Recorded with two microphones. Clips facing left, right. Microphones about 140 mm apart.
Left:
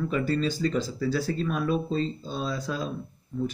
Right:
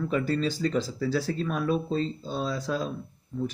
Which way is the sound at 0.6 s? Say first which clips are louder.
Even; centre (ahead or behind).